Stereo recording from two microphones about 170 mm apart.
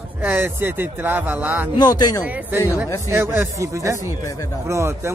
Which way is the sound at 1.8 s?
25° left (ahead or behind).